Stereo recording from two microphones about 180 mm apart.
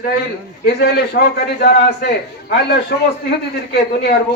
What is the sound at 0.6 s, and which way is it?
A man's voice, 65° left (ahead or behind).